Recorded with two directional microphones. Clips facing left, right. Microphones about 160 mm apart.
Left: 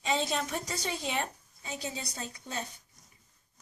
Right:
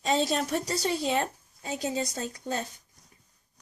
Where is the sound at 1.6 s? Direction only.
45° right (ahead or behind).